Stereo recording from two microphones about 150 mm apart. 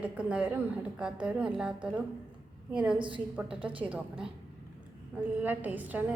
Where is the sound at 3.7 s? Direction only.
35° right (ahead or behind).